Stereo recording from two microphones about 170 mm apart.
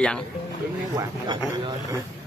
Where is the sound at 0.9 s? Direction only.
25° right (ahead or behind).